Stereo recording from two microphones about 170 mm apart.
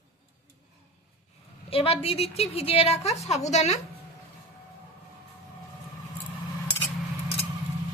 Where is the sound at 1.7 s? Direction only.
35° left (ahead or behind).